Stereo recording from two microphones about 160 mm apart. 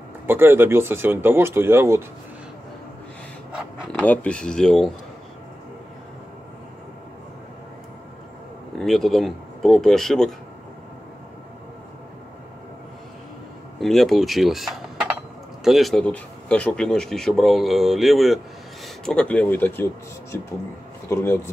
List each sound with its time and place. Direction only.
0.3 s speech: 15° right (ahead or behind)
4.0 s speech: 10° left (ahead or behind)
8.7 s speech: centre (ahead or behind)
13.7 s speech: centre (ahead or behind); by 21.4 s 15° left (ahead or behind)